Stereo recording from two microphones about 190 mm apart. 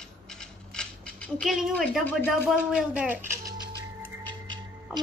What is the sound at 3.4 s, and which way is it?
Music, 20° right (ahead or behind).